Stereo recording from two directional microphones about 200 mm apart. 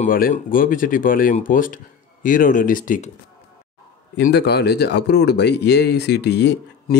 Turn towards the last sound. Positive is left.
turn(degrees=55)  # may be behind; listen again after turning